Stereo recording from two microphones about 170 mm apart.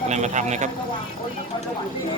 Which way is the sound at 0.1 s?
45° right (ahead or behind).